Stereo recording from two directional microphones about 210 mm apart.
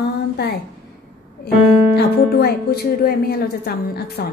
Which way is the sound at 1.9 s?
50° left (ahead or behind).